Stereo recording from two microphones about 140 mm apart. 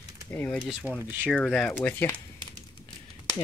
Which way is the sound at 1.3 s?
Centre (ahead or behind).